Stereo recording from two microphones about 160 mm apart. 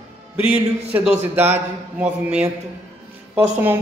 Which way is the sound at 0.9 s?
10° right (ahead or behind).